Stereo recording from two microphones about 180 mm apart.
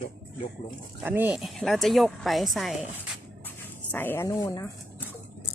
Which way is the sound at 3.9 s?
10° left (ahead or behind).